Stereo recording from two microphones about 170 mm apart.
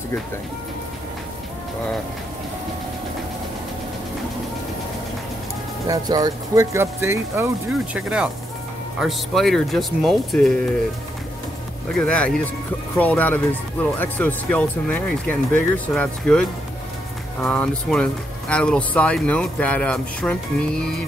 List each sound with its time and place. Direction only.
5.9 s speech: 20° right (ahead or behind)
9.0 s speech: centre (ahead or behind)
11.9 s speech: 5° left (ahead or behind)